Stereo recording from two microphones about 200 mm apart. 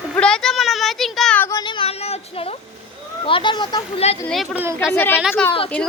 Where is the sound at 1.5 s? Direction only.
20° left (ahead or behind).